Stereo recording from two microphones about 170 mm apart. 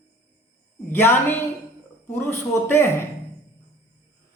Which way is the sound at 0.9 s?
15° left (ahead or behind).